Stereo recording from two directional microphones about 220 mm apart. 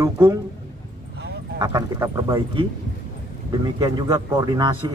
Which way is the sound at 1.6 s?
15° right (ahead or behind).